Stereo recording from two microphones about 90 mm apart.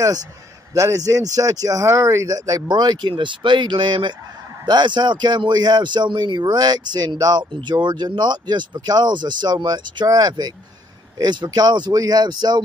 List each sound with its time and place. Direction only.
0.7 s speech: 40° right (ahead or behind)
2.7 s speech: 55° right (ahead or behind)
10.0 s speech: 45° right (ahead or behind)